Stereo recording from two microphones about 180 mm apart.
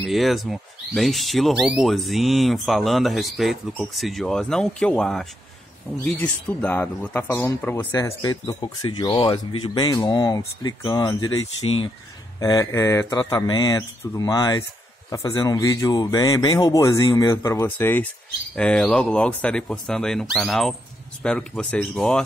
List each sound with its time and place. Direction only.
0.0 s speech: centre (ahead or behind)
8.2 s speech: 25° left (ahead or behind)
11.3 s speech: 90° left
12.4 s speech: 20° left (ahead or behind); by 22.2 s 5° left (ahead or behind)